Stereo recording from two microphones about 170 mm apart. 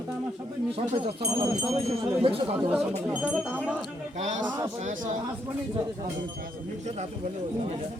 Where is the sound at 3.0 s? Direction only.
10° right (ahead or behind).